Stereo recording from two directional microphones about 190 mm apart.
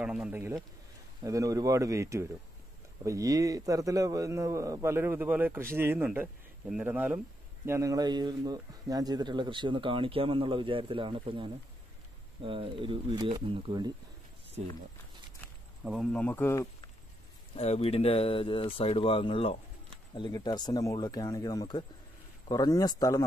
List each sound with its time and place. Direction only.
0.0 s a man's voice: 5° right (ahead or behind); by 13.9 s 25° right (ahead or behind)
15.8 s speech: 5° right (ahead or behind)
17.6 s speech: 35° left (ahead or behind)